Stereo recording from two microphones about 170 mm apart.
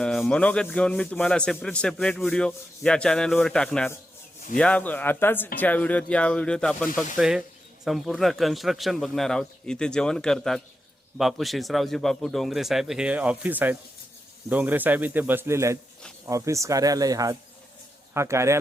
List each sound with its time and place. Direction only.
0.0 s a man's voice: 5° left (ahead or behind); by 18.5 s 15° right (ahead or behind)